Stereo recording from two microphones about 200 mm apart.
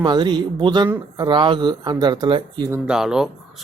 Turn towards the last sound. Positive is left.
turn(degrees=-5)  # may be behind; listen again after turning